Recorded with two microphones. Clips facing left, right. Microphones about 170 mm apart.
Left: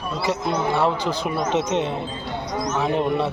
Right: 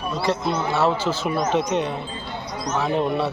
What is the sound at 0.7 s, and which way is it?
A man's voice, 15° left (ahead or behind).